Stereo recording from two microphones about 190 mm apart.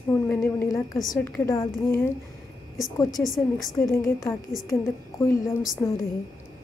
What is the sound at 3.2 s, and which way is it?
Speech, centre (ahead or behind).